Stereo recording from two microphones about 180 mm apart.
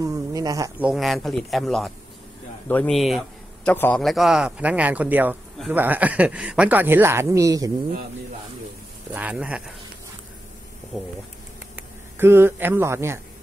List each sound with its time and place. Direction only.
0.0 s speech: 20° right (ahead or behind)
0.7 s a man's voice: 5° right (ahead or behind)
3.7 s a man's voice: 10° left (ahead or behind)
4.0 s speech: centre (ahead or behind); by 7.7 s 20° right (ahead or behind)
9.1 s speech: 5° right (ahead or behind)
10.9 s speech: centre (ahead or behind)
11.7 s speech: 15° right (ahead or behind)